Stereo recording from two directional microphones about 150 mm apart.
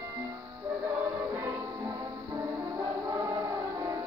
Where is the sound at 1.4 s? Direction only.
20° right (ahead or behind).